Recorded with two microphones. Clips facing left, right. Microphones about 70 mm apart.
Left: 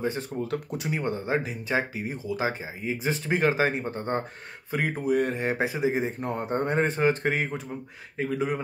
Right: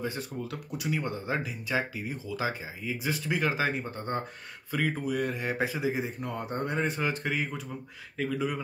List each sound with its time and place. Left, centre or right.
0.0 s speech: left
5.2 s speech: left
8.2 s speech: left